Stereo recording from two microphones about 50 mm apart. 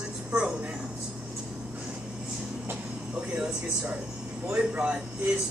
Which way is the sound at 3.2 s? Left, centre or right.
Centre.